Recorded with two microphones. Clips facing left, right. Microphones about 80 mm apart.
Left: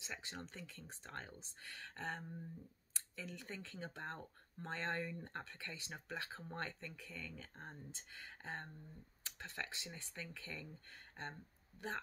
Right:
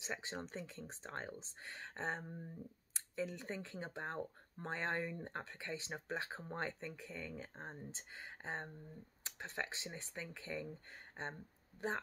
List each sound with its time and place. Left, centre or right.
0.0 s speech: right